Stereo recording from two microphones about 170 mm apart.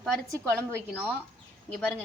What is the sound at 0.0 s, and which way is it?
Speech, centre (ahead or behind).